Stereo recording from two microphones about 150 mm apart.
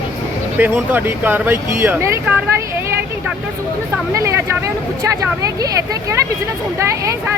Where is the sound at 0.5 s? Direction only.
15° right (ahead or behind).